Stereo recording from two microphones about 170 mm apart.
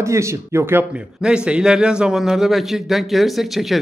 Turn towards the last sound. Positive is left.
turn(degrees=0)  # may be behind; listen again after turning